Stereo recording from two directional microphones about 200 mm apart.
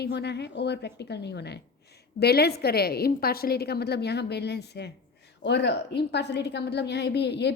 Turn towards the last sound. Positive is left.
turn(degrees=60)  # may be behind; listen again after turning